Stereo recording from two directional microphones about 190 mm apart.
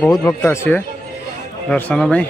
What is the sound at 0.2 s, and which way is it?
Speech, 15° left (ahead or behind).